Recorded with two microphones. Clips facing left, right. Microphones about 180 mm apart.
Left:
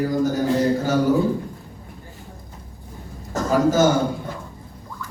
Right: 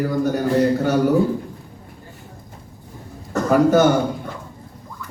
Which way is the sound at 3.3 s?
60° right (ahead or behind).